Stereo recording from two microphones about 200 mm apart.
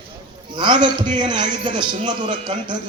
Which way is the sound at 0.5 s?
25° right (ahead or behind).